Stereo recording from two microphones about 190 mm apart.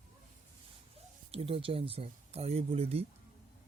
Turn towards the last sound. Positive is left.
turn(degrees=-30)  # may be behind; listen again after turning